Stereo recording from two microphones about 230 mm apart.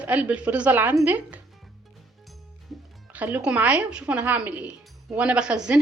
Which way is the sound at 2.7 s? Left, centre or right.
Centre.